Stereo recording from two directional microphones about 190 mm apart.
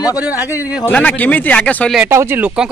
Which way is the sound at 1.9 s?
15° right (ahead or behind).